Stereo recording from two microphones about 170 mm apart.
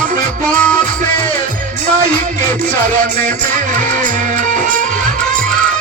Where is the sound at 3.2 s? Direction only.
45° right (ahead or behind).